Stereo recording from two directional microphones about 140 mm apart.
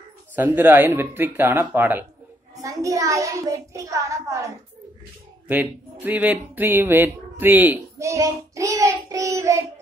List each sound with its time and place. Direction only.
0.4 s a child's voice: 15° right (ahead or behind)